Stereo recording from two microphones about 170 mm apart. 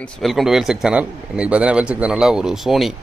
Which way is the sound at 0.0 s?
Centre (ahead or behind).